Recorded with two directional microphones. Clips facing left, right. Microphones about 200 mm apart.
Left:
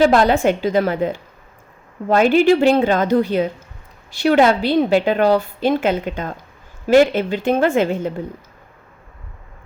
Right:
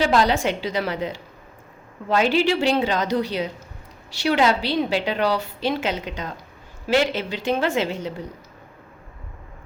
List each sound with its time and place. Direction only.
0.0 s a woman's voice: 50° left (ahead or behind)